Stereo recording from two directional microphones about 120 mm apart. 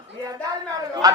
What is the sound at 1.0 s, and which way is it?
Speech, 30° right (ahead or behind).